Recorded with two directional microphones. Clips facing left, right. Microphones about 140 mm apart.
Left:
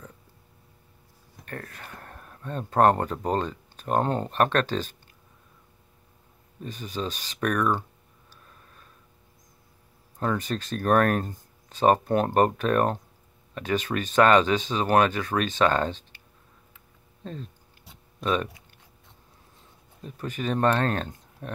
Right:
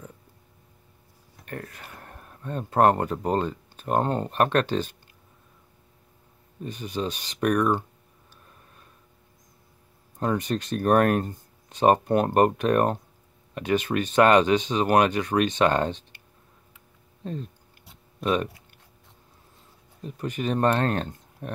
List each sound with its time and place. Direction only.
1.4 s speech: 20° right (ahead or behind)
6.6 s speech: 15° right (ahead or behind)
10.1 s speech: 15° right (ahead or behind)
18.2 s speech: 15° right (ahead or behind)
20.0 s speech: 15° right (ahead or behind)